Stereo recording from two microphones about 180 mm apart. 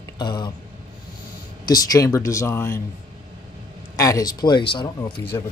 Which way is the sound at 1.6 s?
20° left (ahead or behind).